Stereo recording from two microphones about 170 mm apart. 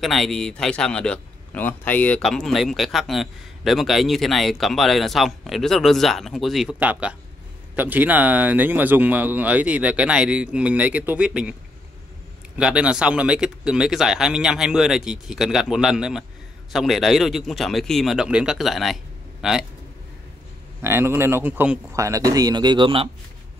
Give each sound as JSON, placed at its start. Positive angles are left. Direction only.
{"t": 0.0, "sound": "a man's voice", "side_deg": 0}
{"t": 12.5, "sound": "a man's voice", "side_deg": -5}
{"t": 20.8, "sound": "speech", "side_deg": -15}